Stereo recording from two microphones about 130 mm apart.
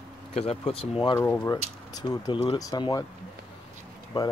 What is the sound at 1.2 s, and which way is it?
Speech, 20° left (ahead or behind).